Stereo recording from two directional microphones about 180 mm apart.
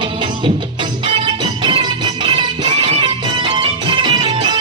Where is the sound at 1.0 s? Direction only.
25° right (ahead or behind).